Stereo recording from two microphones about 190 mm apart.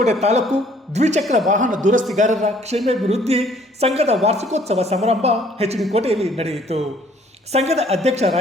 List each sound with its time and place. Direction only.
0.0 s a woman's voice: 35° right (ahead or behind)